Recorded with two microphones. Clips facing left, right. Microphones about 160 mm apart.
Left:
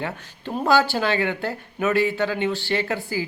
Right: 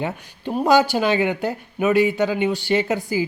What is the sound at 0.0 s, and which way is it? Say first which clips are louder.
Speech: right 4 dB; 15° right (ahead or behind).